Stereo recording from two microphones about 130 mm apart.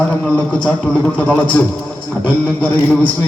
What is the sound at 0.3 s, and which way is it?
Speech, 10° left (ahead or behind).